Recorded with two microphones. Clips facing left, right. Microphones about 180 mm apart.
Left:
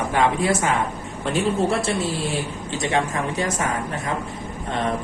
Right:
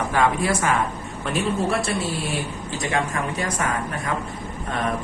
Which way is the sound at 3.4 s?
25° left (ahead or behind).